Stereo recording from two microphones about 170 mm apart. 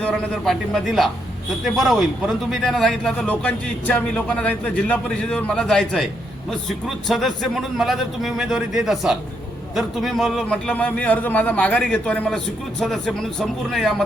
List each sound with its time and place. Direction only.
0.0 s speech: centre (ahead or behind)